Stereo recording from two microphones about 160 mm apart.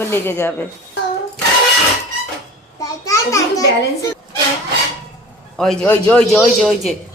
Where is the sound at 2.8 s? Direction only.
20° left (ahead or behind).